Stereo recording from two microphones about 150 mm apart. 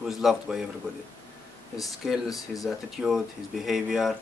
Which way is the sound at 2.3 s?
25° left (ahead or behind).